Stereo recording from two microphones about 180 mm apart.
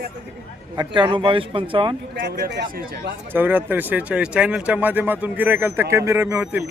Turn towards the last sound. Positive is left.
turn(degrees=-10)  # may be behind; listen again after turning